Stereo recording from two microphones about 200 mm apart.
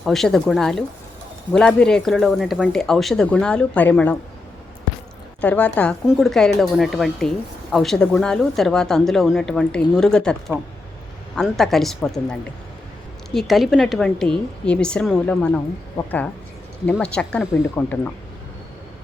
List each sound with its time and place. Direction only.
0.0 s speech: centre (ahead or behind)
5.4 s speech: 5° left (ahead or behind)
16.9 s speech: 5° left (ahead or behind)